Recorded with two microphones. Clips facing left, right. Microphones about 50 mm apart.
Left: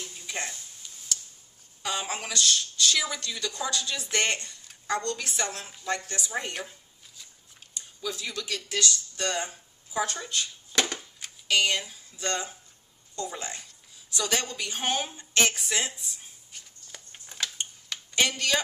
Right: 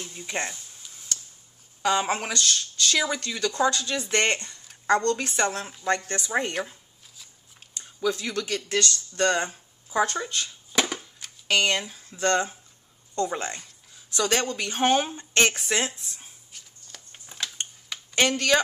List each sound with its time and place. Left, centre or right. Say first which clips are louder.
0.3 s speech: right 5 dB; right
1.8 s speech: right 8 dB; right
7.7 s speech: right 8 dB; right
10.7 s a sound: right 2 dB; centre
11.4 s speech: right 2 dB; right
16.5 s shuffling cards: left 1 dB; centre
18.1 s speech: right 4 dB; right